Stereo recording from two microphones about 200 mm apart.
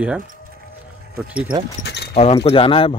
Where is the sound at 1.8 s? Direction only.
60° left (ahead or behind).